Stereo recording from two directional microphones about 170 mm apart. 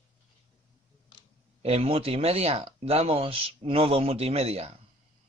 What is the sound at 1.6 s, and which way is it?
A man's voice, 35° right (ahead or behind).